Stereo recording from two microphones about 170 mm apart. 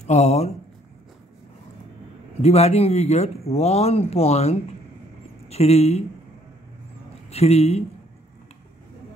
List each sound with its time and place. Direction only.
0.0 s speech: 40° left (ahead or behind)
2.4 s speech: 40° left (ahead or behind)
7.2 s speech: 40° left (ahead or behind)